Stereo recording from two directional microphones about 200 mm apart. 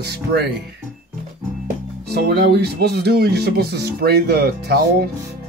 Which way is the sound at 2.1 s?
50° right (ahead or behind).